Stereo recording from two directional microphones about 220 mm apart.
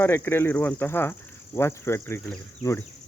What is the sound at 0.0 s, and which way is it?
Speech, 10° left (ahead or behind).